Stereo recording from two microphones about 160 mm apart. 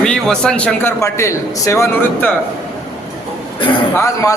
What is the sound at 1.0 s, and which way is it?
A man's voice, 20° left (ahead or behind).